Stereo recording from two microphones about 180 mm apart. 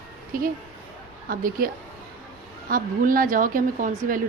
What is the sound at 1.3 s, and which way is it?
Speech, 50° right (ahead or behind).